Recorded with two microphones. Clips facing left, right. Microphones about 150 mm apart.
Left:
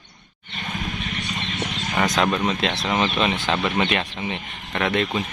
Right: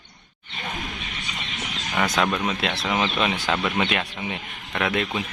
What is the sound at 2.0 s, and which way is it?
Speech, centre (ahead or behind).